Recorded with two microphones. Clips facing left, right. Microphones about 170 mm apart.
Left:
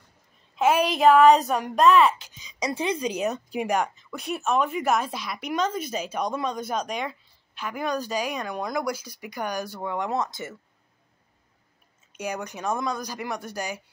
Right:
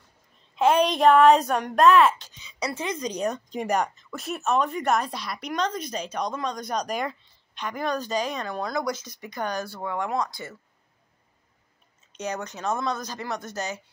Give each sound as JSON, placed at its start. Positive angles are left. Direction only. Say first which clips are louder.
{"t": 0.6, "sound": "speech", "louder": "right 1 dB", "side_deg": 5}
{"t": 2.2, "sound": "speech", "louder": "left 2 dB", "side_deg": 10}
{"t": 12.1, "sound": "speech", "louder": "even", "side_deg": 10}